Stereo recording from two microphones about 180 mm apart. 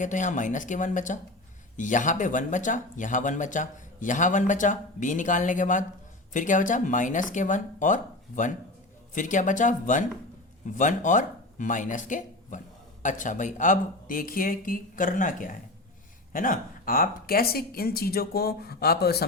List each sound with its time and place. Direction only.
0.0 s speech: 45° left (ahead or behind); by 19.2 s 60° left (ahead or behind)